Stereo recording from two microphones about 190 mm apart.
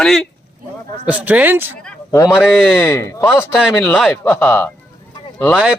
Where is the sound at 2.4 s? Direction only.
Centre (ahead or behind).